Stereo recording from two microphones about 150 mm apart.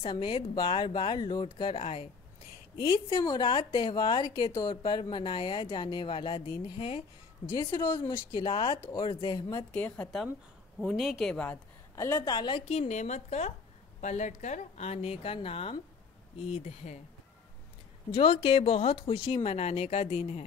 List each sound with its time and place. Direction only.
0.0 s speech: 35° left (ahead or behind)
9.7 s a woman's voice: 10° left (ahead or behind)
11.9 s a woman's voice: 20° left (ahead or behind); by 17.0 s 45° left (ahead or behind)
18.1 s speech: 40° left (ahead or behind)